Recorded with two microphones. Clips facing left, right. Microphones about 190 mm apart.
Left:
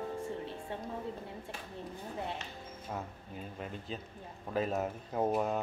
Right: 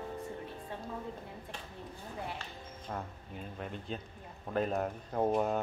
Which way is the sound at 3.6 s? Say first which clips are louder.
Right 2 dB; centre (ahead or behind).